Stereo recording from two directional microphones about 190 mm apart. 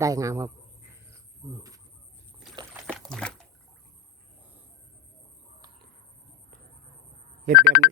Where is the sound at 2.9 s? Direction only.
5° left (ahead or behind).